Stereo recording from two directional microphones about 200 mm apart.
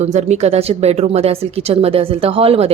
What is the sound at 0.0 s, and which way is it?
A woman's voice, 35° right (ahead or behind).